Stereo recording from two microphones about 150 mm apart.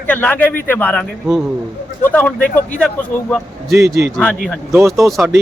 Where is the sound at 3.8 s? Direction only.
90° right.